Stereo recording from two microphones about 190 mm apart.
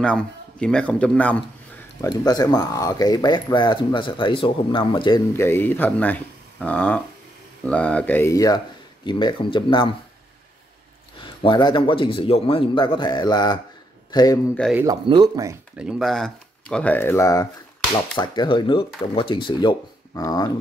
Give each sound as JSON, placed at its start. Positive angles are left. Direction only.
{"t": 0.0, "sound": "speech", "side_deg": 5}
{"t": 2.0, "sound": "speech", "side_deg": 20}
{"t": 11.2, "sound": "speech", "side_deg": 25}
{"t": 14.9, "sound": "speech", "side_deg": -20}
{"t": 15.8, "sound": "speech", "side_deg": 0}